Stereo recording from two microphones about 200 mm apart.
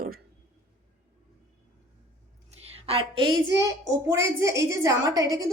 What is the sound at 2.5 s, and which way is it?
A woman's voice, 30° right (ahead or behind).